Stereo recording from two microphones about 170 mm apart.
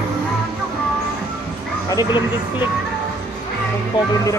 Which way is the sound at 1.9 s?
20° left (ahead or behind).